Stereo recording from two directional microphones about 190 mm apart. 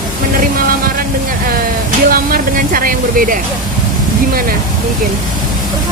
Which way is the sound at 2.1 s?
50° right (ahead or behind).